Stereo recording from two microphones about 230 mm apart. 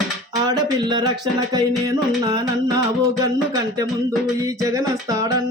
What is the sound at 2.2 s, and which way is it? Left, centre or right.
Music, centre.